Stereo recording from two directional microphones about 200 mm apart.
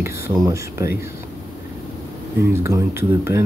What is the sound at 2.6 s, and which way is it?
Speech, 15° right (ahead or behind).